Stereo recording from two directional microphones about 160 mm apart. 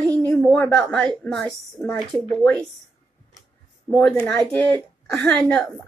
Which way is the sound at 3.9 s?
5° left (ahead or behind).